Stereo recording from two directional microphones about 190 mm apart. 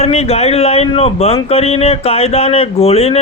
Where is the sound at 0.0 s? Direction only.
35° left (ahead or behind).